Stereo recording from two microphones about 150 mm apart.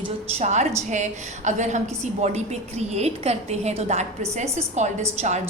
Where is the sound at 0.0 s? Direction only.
45° right (ahead or behind).